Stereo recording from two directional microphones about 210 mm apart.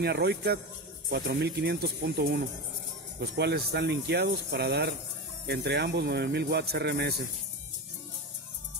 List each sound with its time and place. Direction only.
0.0 s speech: 50° right (ahead or behind)